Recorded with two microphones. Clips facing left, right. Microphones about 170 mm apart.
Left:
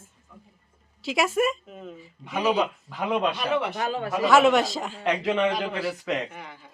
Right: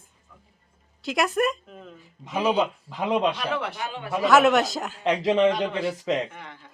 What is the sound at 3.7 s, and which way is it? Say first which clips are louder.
Speech: left 5 dB; 40° left (ahead or behind).